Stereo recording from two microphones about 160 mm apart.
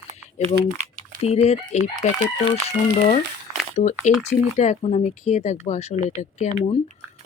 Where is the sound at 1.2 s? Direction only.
40° left (ahead or behind).